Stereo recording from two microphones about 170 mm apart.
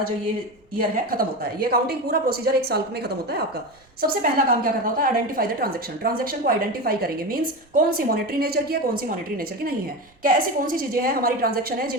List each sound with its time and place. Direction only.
1.7 s a woman's voice: 65° right (ahead or behind)
10.2 s a woman's voice: 55° right (ahead or behind)